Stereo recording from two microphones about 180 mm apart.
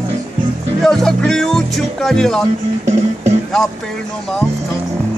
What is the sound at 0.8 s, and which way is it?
Speech, centre (ahead or behind).